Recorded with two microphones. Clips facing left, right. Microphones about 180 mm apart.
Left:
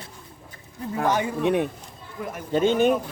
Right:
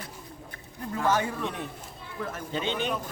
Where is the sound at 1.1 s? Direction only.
15° left (ahead or behind).